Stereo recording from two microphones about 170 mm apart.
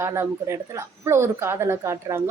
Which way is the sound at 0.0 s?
15° right (ahead or behind).